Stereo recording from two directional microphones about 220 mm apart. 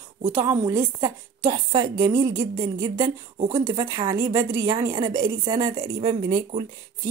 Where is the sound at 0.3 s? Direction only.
15° right (ahead or behind).